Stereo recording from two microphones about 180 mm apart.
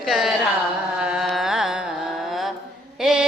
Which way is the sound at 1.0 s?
Centre (ahead or behind).